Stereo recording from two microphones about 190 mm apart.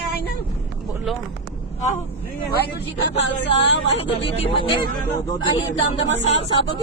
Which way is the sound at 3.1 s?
80° left.